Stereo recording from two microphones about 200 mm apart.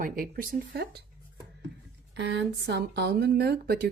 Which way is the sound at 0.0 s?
45° right (ahead or behind).